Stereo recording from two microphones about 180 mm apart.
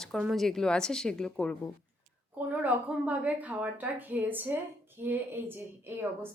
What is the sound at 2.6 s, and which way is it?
A woman's voice, 10° right (ahead or behind).